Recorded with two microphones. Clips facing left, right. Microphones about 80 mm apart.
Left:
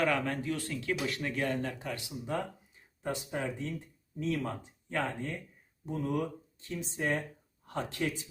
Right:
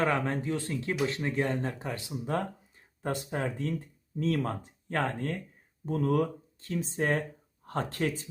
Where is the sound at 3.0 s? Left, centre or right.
Right.